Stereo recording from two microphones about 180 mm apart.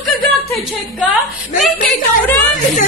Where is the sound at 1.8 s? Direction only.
45° left (ahead or behind).